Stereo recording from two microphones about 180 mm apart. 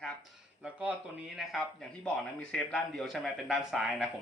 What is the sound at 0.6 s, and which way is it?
Speech, 5° right (ahead or behind).